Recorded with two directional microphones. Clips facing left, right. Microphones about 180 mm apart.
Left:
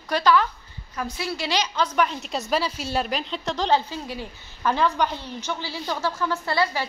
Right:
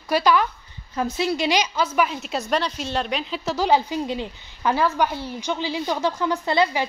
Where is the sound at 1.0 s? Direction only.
20° right (ahead or behind).